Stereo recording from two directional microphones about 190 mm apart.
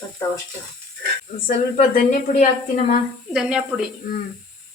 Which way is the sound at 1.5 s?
50° left (ahead or behind).